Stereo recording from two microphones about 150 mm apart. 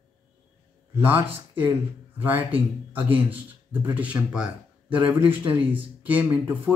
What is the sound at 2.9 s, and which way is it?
Speech, 10° right (ahead or behind).